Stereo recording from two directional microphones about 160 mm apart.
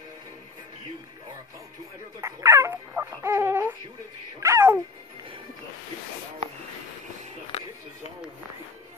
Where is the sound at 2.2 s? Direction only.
15° right (ahead or behind).